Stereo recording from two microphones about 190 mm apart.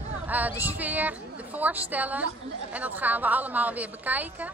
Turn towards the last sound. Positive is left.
turn(degrees=-10)  # may be behind; listen again after turning